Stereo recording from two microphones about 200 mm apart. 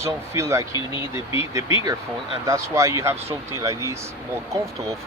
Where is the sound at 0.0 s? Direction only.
15° right (ahead or behind).